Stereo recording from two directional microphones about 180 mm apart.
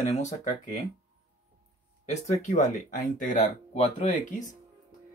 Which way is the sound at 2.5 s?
40° left (ahead or behind).